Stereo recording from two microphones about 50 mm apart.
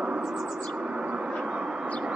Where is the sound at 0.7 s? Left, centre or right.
Right.